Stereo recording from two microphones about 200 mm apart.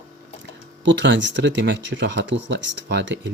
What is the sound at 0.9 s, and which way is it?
Speech, 65° right (ahead or behind).